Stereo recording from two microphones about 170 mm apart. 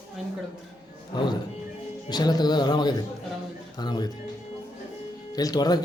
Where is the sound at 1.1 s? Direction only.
25° left (ahead or behind).